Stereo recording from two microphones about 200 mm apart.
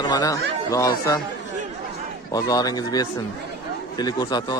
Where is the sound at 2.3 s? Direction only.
20° left (ahead or behind).